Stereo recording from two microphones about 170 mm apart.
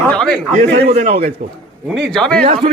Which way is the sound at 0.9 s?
35° right (ahead or behind).